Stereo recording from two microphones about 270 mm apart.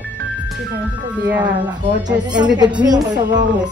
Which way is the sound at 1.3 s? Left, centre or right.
Centre.